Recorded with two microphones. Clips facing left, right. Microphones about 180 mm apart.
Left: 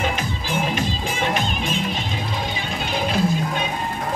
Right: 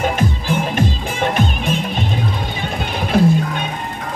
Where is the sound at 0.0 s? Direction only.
55° right (ahead or behind).